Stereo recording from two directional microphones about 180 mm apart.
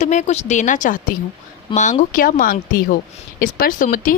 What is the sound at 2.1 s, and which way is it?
Speech, 50° left (ahead or behind).